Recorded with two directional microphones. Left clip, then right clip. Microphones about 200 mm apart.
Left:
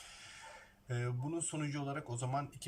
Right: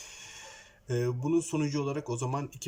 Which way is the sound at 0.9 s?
15° right (ahead or behind).